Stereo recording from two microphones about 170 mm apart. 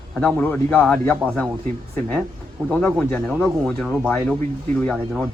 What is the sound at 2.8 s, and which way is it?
Speech, 10° left (ahead or behind).